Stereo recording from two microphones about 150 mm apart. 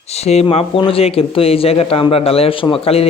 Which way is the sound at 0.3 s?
45° left (ahead or behind).